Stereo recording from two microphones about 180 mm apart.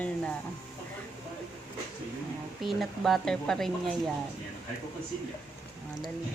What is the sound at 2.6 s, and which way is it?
Speech, centre (ahead or behind).